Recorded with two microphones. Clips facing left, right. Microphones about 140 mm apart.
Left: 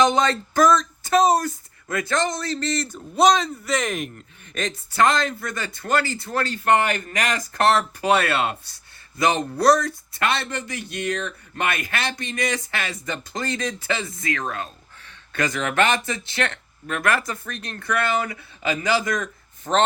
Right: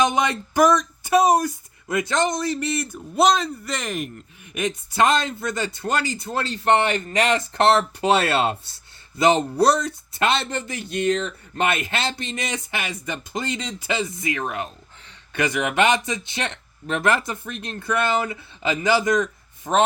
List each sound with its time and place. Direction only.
0.0 s a man's voice: 15° right (ahead or behind)
4.9 s speech: 20° right (ahead or behind)